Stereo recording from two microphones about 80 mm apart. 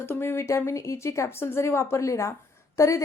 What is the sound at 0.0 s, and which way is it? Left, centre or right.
A woman's voice, left.